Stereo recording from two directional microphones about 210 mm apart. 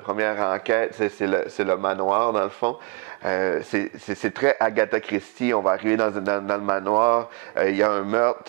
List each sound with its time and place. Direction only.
0.0 s speech: 15° right (ahead or behind)